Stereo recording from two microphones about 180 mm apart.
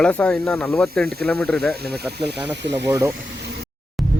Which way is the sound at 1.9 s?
65° right (ahead or behind).